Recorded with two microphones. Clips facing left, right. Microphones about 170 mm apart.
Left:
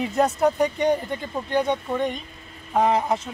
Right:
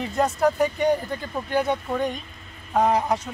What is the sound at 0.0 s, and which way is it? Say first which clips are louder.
Speech: left 1 dB; centre (ahead or behind).